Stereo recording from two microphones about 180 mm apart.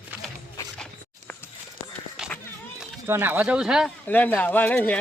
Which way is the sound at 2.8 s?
10° right (ahead or behind).